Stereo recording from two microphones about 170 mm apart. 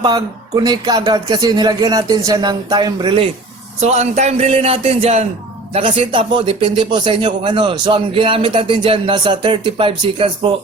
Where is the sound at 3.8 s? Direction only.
40° right (ahead or behind).